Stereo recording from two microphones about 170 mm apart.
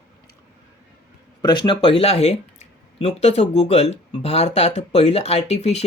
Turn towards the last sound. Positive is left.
turn(degrees=40)  # may be behind; listen again after turning